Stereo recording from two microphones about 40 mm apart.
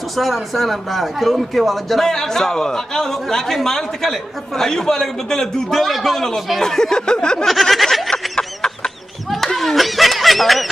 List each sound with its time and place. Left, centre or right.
0.1 s speech: centre
2.0 s a man's voice: centre
7.4 s snicker: centre
8.1 s chicken: centre
9.8 s honk: centre